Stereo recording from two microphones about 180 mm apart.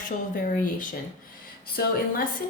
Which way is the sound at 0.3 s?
50° left (ahead or behind).